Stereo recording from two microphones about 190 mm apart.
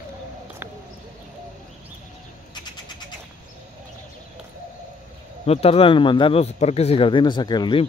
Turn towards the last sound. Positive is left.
turn(degrees=25)  # may be behind; listen again after turning